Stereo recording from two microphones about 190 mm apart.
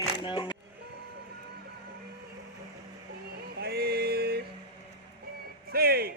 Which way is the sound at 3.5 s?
55° right (ahead or behind).